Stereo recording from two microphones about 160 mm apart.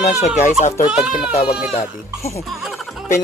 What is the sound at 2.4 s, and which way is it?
Laughter, centre (ahead or behind).